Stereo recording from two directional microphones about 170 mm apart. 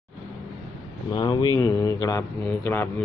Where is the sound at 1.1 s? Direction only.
25° left (ahead or behind).